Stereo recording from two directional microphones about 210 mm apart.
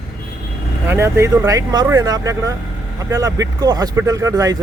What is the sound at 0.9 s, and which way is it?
Speech, 15° right (ahead or behind).